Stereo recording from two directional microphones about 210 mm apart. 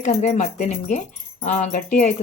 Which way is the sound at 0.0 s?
35° left (ahead or behind).